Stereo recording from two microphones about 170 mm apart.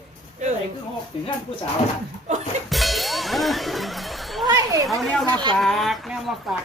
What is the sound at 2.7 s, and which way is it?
Music, centre (ahead or behind).